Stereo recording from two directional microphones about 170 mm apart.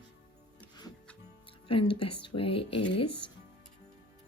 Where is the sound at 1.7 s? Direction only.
30° left (ahead or behind).